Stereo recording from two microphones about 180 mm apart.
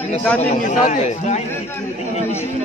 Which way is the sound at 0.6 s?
45° left (ahead or behind).